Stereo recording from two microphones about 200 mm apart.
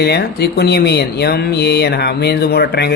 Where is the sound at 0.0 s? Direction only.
55° left (ahead or behind).